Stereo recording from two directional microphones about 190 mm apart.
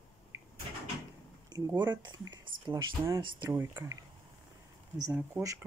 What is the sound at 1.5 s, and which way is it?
Speech, 20° right (ahead or behind).